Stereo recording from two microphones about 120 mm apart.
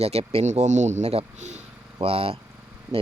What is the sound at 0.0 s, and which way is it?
Speech, 60° right (ahead or behind).